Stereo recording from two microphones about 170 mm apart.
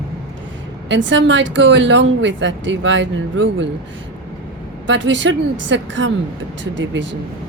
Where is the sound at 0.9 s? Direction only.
90° right.